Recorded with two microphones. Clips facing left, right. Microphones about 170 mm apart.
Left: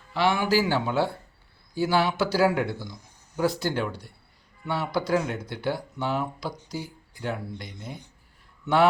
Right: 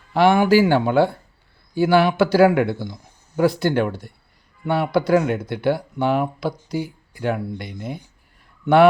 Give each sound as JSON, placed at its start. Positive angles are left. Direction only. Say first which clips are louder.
{"t": 0.1, "sound": "a man's voice", "louder": "right 8 dB", "side_deg": -50}